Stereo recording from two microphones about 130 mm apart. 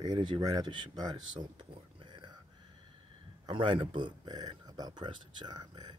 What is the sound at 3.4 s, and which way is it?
Speech, 40° right (ahead or behind).